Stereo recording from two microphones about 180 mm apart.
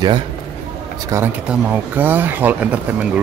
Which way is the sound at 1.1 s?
10° right (ahead or behind).